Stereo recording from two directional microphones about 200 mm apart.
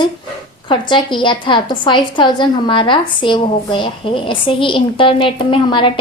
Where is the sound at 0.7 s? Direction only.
25° left (ahead or behind).